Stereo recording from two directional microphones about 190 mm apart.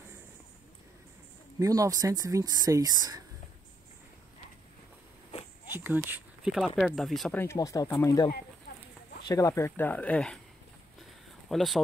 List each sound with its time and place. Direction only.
1.6 s speech: 20° right (ahead or behind)
5.7 s speech: 10° right (ahead or behind)
7.3 s speech: 15° left (ahead or behind)
11.0 s a sound: centre (ahead or behind)